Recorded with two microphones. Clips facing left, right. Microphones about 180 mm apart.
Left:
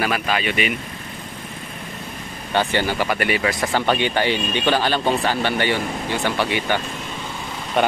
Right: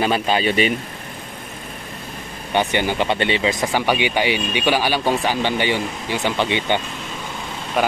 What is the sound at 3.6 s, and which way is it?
Speech, 10° right (ahead or behind).